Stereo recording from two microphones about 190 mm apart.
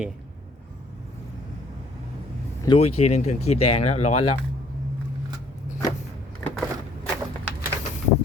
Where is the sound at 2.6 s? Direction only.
30° left (ahead or behind).